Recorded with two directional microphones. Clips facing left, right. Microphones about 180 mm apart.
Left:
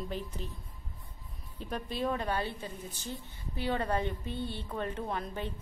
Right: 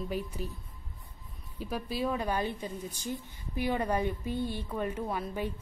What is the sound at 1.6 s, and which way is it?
A woman's voice, 5° right (ahead or behind).